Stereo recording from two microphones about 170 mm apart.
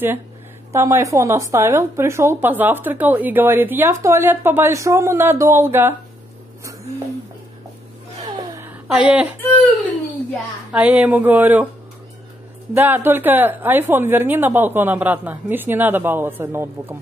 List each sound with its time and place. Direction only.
0.7 s speech: 15° right (ahead or behind)
8.9 s speech: 5° right (ahead or behind)
10.7 s speech: 5° right (ahead or behind)
12.7 s speech: 10° right (ahead or behind)